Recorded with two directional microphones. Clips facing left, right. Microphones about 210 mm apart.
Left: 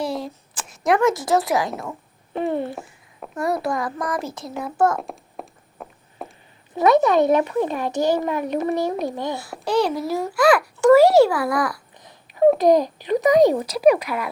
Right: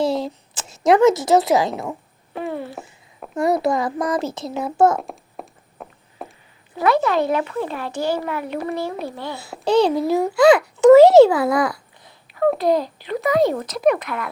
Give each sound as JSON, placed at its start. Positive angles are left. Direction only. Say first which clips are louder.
{"t": 0.0, "sound": "a woman's voice", "louder": "right 5 dB", "side_deg": -25}
{"t": 2.3, "sound": "a child's voice", "louder": "left 4 dB", "side_deg": 25}
{"t": 3.3, "sound": "a child's voice", "louder": "right 4 dB", "side_deg": -20}
{"t": 4.9, "sound": "a sound", "louder": "right 1 dB", "side_deg": 0}
{"t": 6.7, "sound": "a child's voice", "louder": "left 3 dB", "side_deg": 20}
{"t": 9.6, "sound": "a child's voice", "louder": "right 4 dB", "side_deg": -25}
{"t": 12.0, "sound": "babbling", "louder": "left 3 dB", "side_deg": 15}
{"t": 12.5, "sound": "speech", "louder": "left 3 dB", "side_deg": 15}